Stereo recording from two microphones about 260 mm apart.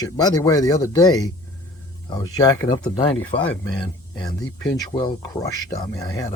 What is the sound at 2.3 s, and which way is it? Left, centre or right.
Speech, centre.